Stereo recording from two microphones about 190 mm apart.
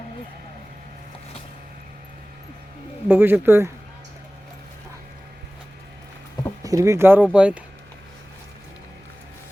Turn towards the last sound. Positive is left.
turn(degrees=-5)  # may be behind; listen again after turning